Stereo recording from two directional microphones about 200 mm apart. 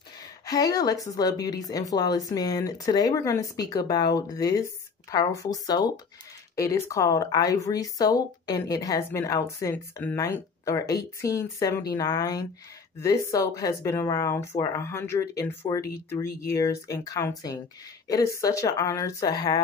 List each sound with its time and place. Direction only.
0.5 s speech: 20° left (ahead or behind)